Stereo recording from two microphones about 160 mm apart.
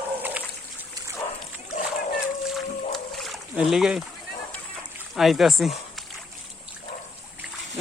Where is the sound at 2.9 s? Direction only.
Centre (ahead or behind).